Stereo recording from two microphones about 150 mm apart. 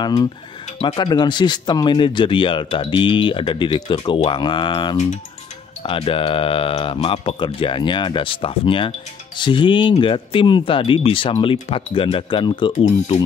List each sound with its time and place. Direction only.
0.0 s speech: 25° left (ahead or behind)
12.8 s speech: 45° left (ahead or behind)